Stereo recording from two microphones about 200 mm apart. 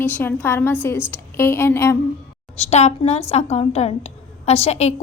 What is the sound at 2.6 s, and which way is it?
A woman's voice, 35° left (ahead or behind).